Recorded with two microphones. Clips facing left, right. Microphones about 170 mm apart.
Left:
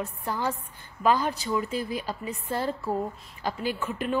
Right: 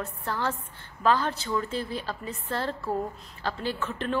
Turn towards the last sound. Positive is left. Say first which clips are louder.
# left 1 dB
turn(degrees=10)  # may be behind; listen again after turning